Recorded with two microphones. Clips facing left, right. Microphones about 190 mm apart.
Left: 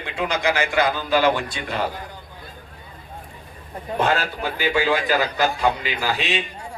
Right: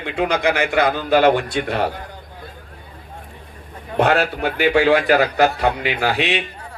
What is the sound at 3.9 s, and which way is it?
A man's voice, 70° right (ahead or behind).